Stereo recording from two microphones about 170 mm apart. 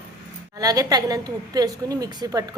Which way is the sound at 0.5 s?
20° right (ahead or behind).